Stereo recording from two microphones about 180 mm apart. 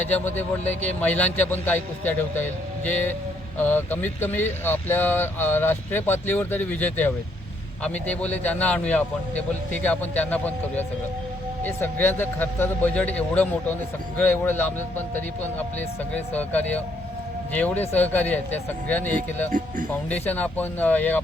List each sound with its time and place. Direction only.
0.0 s speech: 10° left (ahead or behind)
19.5 s speech: 45° right (ahead or behind)
20.1 s speech: 10° left (ahead or behind)